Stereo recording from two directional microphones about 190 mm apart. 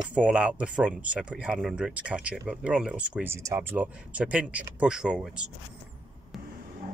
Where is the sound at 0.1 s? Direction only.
5° right (ahead or behind).